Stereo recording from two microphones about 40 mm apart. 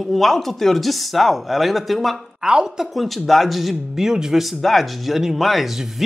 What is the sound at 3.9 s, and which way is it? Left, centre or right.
Speech, centre.